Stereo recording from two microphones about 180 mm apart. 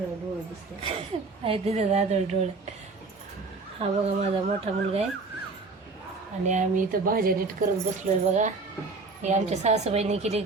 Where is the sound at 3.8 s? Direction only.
35° right (ahead or behind).